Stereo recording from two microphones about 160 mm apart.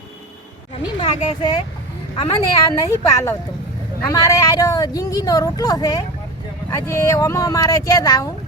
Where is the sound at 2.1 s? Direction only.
30° left (ahead or behind).